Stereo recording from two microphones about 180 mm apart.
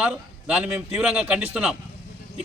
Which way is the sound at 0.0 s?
5° right (ahead or behind).